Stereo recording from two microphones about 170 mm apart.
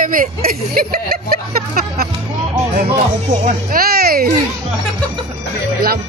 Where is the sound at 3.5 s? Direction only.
60° right (ahead or behind).